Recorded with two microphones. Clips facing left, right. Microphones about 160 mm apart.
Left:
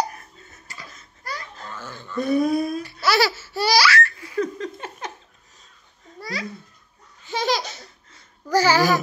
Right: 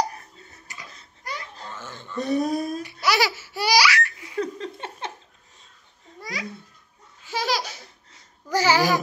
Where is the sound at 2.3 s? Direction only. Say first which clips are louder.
Left 3 dB; 40° right (ahead or behind).